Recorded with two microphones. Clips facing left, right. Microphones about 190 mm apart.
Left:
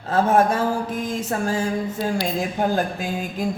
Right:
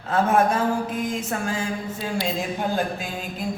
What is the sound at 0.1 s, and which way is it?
Speech, 35° left (ahead or behind).